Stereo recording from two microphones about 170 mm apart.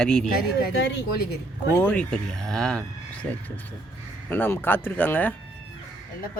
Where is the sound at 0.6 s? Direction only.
75° left (ahead or behind).